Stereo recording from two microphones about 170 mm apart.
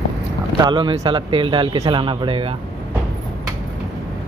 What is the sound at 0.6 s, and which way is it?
A man's voice, 25° right (ahead or behind).